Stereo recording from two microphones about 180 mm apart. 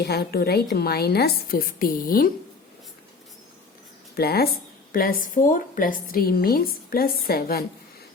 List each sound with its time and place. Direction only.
0.0 s a woman's voice: 60° left (ahead or behind)
4.1 s a woman's voice: 60° left (ahead or behind)